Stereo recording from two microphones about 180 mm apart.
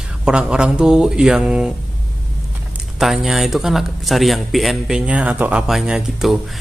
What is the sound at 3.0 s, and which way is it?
Speech, centre (ahead or behind).